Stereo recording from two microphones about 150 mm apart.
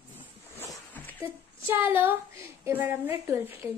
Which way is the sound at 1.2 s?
15° right (ahead or behind).